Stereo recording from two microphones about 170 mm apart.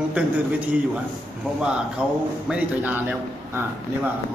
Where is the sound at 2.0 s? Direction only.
5° right (ahead or behind).